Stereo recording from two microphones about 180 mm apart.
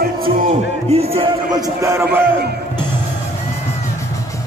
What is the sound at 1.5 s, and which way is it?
Speech, 20° right (ahead or behind).